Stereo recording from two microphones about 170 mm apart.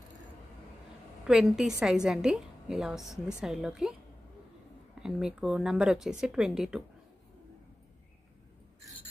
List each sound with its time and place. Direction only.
1.2 s a woman's voice: 5° right (ahead or behind)
3.0 s a woman's voice: 20° left (ahead or behind)
3.3 s speech: centre (ahead or behind)
5.0 s speech: 5° right (ahead or behind)